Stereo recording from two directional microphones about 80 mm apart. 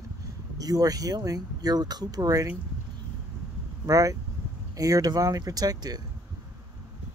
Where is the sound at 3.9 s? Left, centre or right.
Right.